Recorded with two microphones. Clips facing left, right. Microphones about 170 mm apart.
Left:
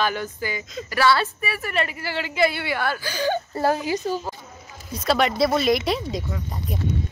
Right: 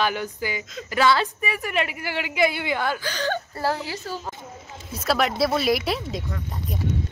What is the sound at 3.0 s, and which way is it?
A woman's voice, 10° left (ahead or behind).